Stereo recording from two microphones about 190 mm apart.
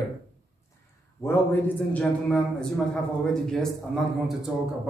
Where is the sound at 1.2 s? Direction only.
10° left (ahead or behind).